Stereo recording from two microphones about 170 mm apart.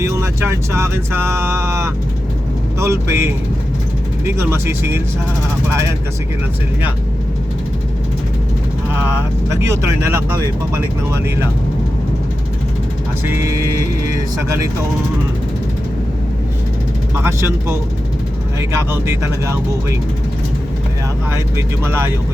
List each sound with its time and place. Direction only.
0.0 s speech: 15° right (ahead or behind)
9.5 s speech: 15° right (ahead or behind)
13.2 s speech: 15° right (ahead or behind)
17.2 s speech: 15° right (ahead or behind)
18.9 s speech: 15° right (ahead or behind)
21.8 s speech: 15° right (ahead or behind)